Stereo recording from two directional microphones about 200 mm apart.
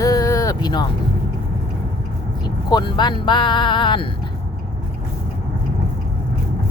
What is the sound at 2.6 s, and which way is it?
Speech, 20° left (ahead or behind).